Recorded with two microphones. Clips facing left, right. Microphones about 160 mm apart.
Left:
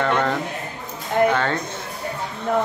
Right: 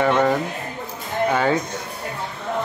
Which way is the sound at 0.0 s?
10° right (ahead or behind).